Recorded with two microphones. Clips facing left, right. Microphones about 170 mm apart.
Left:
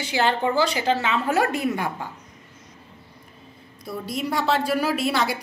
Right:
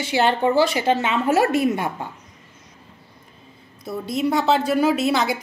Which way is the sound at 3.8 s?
25° right (ahead or behind).